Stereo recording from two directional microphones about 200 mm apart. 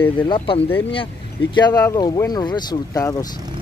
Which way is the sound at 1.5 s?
20° left (ahead or behind).